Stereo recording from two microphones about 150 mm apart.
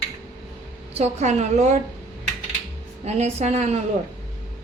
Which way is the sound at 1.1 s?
50° right (ahead or behind).